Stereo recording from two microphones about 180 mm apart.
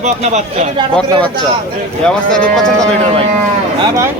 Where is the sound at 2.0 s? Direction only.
5° left (ahead or behind).